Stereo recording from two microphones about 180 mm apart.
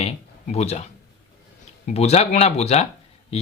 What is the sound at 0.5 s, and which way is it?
Speech, 35° left (ahead or behind).